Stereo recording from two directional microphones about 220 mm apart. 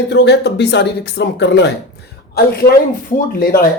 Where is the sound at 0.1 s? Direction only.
50° left (ahead or behind).